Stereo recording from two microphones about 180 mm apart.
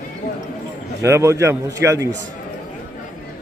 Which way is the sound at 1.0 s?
15° right (ahead or behind).